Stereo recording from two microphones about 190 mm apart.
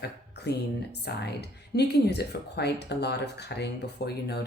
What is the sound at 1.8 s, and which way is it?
Speech, 60° left (ahead or behind).